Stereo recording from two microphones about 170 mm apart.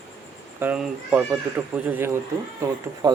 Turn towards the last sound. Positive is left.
turn(degrees=-25)  # may be behind; listen again after turning